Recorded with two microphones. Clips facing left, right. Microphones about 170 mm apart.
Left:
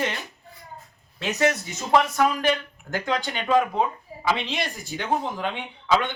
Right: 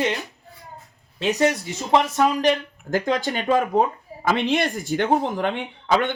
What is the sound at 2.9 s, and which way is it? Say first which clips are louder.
Speech: right 5 dB; 40° right (ahead or behind).